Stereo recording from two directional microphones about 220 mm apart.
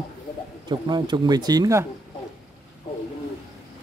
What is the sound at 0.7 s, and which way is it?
Speech, 20° right (ahead or behind).